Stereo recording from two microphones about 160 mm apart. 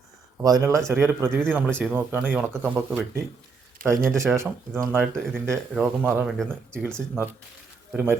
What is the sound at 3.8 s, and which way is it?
Speech, 65° right (ahead or behind).